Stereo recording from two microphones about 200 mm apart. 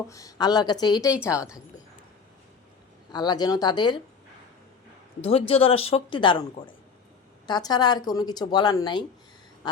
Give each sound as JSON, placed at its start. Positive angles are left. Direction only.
{"t": 0.1, "sound": "speech", "side_deg": 15}
{"t": 3.1, "sound": "speech", "side_deg": 20}
{"t": 5.2, "sound": "speech", "side_deg": 30}